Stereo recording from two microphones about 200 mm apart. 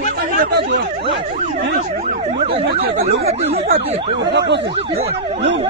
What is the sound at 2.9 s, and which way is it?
Speech, 30° right (ahead or behind).